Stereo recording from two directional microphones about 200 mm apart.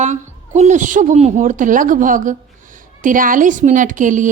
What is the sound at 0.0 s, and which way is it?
Speech, 35° right (ahead or behind).